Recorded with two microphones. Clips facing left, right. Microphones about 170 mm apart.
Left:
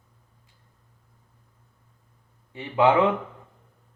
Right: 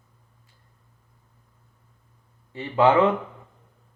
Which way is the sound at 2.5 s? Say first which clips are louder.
Right 1 dB; 15° left (ahead or behind).